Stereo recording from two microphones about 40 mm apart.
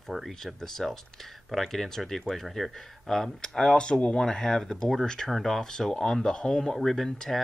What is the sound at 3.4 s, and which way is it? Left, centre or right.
Speech, centre.